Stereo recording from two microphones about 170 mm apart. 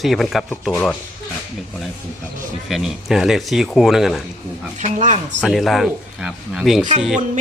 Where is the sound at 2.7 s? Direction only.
Centre (ahead or behind).